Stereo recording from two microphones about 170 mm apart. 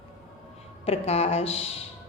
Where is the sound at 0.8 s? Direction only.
35° left (ahead or behind).